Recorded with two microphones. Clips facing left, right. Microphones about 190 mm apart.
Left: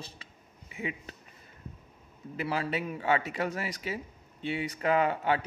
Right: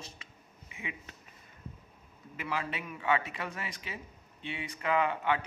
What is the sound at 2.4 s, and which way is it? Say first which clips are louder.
Speech: left 5 dB; 35° left (ahead or behind).